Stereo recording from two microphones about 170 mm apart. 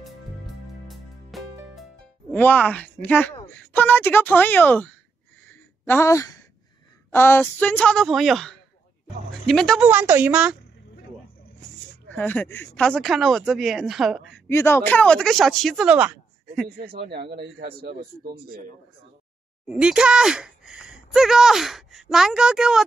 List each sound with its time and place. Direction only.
0.8 s music: centre (ahead or behind)
2.3 s speech: 10° left (ahead or behind)
5.5 s a sound: 15° left (ahead or behind)
7.1 s speech: 15° left (ahead or behind)
9.8 s a woman's voice: 10° right (ahead or behind)
12.1 s speech: 10° left (ahead or behind)
14.5 s speech: 15° left (ahead or behind); by 16.2 s 10° right (ahead or behind)
16.6 s speech: 65° right (ahead or behind)
19.7 s speech: 5° right (ahead or behind)